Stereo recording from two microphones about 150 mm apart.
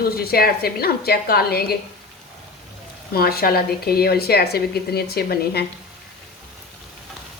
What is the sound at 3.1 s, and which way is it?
A woman's voice, 85° left.